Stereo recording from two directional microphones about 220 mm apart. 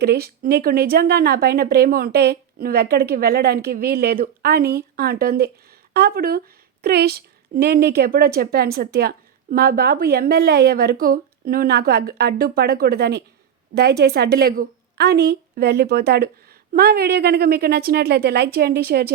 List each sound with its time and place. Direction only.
0.0 s speech: 45° right (ahead or behind)